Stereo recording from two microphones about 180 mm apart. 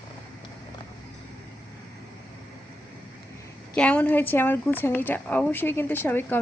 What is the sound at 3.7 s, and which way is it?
A woman's voice, 5° left (ahead or behind).